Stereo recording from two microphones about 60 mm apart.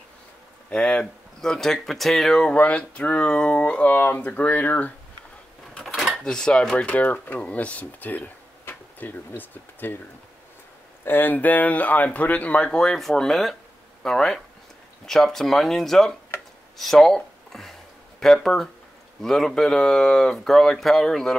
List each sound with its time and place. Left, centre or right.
0.7 s speech: centre
1.4 s speech: centre
2.3 s speech: centre
3.9 s speech: left
6.2 s speech: centre
6.9 s speech: left
11.1 s speech: left; by 21.4 s centre